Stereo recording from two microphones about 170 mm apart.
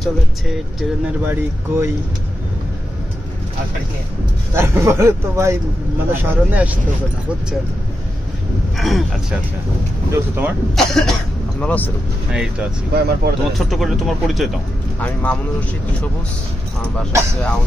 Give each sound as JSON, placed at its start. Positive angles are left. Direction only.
{"t": 0.0, "sound": "speech", "side_deg": 0}
{"t": 1.2, "sound": "speech", "side_deg": -10}
{"t": 4.6, "sound": "speech", "side_deg": -15}
{"t": 8.7, "sound": "speech", "side_deg": 0}
{"t": 10.1, "sound": "speech", "side_deg": -10}
{"t": 10.8, "sound": "speech", "side_deg": 0}
{"t": 12.3, "sound": "speech", "side_deg": -5}
{"t": 12.9, "sound": "speech", "side_deg": -70}
{"t": 13.5, "sound": "speech", "side_deg": 0}